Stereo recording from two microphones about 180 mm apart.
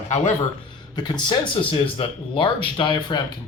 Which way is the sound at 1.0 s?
25° left (ahead or behind).